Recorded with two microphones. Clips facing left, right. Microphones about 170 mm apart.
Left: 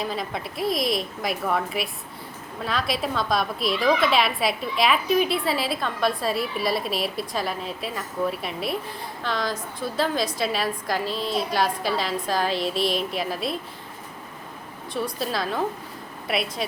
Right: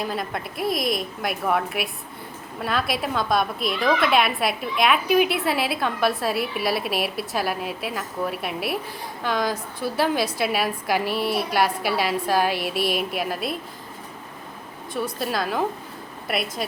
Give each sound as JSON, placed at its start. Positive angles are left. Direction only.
{"t": 0.1, "sound": "a woman's voice", "side_deg": 0}
{"t": 12.5, "sound": "speech", "side_deg": 25}
{"t": 13.1, "sound": "a woman's voice", "side_deg": 0}
{"t": 14.9, "sound": "a woman's voice", "side_deg": 0}